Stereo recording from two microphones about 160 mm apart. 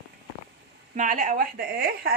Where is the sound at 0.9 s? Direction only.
55° right (ahead or behind); by 2.1 s 70° right (ahead or behind).